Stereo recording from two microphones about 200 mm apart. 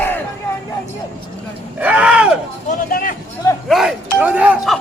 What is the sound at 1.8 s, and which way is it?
Speech, 5° right (ahead or behind).